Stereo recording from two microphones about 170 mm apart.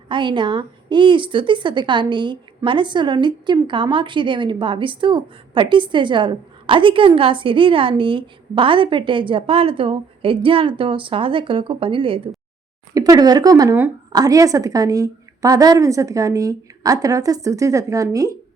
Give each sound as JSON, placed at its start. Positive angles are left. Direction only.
{"t": 0.1, "sound": "a woman's voice", "side_deg": -30}